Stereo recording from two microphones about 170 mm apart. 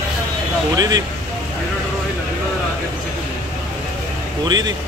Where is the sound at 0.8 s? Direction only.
20° right (ahead or behind).